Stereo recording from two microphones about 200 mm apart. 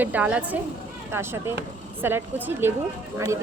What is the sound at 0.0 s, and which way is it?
A woman's voice, 10° right (ahead or behind).